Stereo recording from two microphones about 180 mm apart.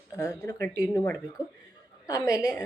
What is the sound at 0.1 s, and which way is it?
A woman's voice, 15° left (ahead or behind).